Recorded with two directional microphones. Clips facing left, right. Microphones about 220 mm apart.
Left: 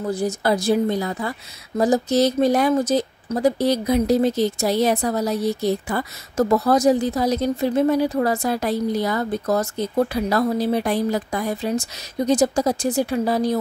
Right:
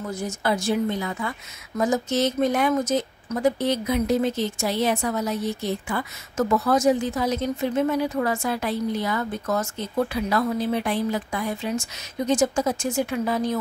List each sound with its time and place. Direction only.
0.0 s speech: 35° left (ahead or behind)